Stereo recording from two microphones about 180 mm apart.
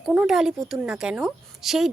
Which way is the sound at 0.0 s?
5° right (ahead or behind).